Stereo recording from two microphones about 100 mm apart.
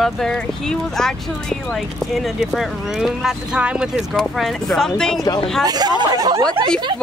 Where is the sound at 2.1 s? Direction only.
5° right (ahead or behind).